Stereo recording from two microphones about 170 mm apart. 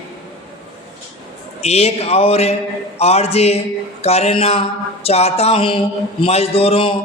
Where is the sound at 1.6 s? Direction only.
40° left (ahead or behind).